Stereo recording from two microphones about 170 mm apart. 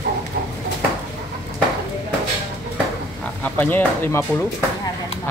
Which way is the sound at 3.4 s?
10° left (ahead or behind).